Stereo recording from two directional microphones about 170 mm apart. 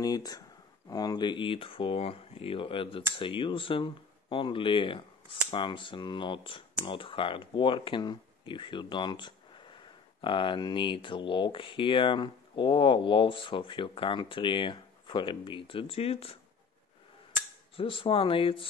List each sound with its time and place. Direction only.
0.0 s speech: 20° left (ahead or behind)
17.7 s speech: 30° left (ahead or behind)